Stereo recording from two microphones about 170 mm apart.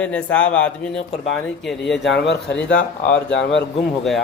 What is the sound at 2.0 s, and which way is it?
Speech, 90° left.